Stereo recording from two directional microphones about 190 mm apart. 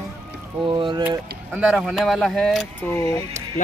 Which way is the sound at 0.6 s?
25° right (ahead or behind).